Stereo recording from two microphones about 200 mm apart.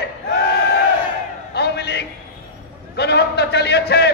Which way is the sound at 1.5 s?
55° left (ahead or behind).